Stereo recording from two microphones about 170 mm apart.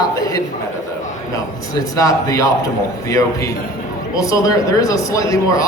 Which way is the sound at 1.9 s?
20° left (ahead or behind).